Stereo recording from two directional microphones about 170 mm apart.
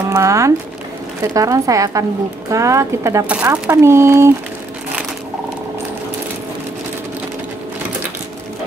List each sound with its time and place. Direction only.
0.1 s speech: 20° right (ahead or behind)